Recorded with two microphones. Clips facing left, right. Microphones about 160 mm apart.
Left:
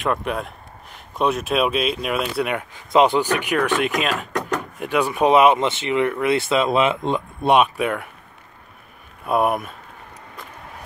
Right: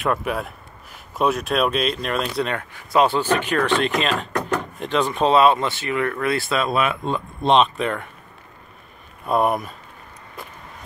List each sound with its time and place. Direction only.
0.0 s speech: centre (ahead or behind)
9.2 s speech: 5° left (ahead or behind)